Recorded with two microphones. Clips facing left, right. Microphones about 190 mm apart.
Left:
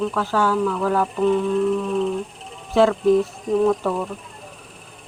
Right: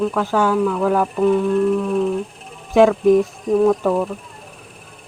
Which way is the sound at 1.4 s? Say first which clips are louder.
Right 3 dB; 5° right (ahead or behind).